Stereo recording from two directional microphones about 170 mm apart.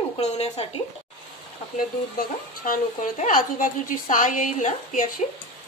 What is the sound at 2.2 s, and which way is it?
A woman's voice, 55° left (ahead or behind).